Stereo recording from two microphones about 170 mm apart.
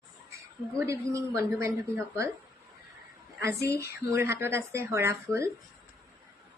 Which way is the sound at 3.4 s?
15° right (ahead or behind).